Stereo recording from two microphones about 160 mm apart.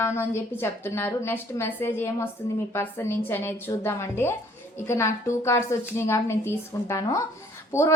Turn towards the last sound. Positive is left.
turn(degrees=15)  # may be behind; listen again after turning